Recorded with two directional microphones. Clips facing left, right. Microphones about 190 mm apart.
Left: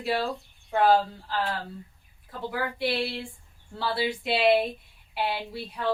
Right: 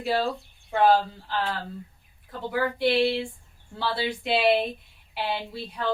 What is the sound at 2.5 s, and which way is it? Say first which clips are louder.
Speech: right 5 dB; centre (ahead or behind).